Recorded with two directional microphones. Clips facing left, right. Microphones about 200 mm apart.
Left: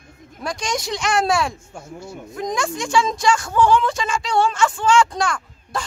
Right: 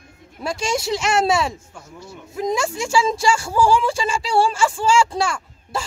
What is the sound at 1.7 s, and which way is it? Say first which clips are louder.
Speech: left 4 dB; 50° left (ahead or behind).